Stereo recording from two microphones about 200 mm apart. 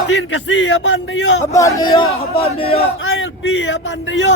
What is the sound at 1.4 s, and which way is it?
Speech, 15° left (ahead or behind).